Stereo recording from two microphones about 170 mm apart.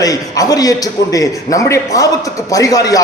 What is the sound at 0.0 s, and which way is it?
A man's voice, 20° left (ahead or behind).